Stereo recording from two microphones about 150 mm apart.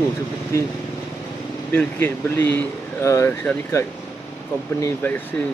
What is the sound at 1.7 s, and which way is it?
Speech, 15° left (ahead or behind).